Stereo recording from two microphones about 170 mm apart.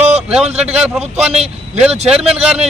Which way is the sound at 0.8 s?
5° right (ahead or behind).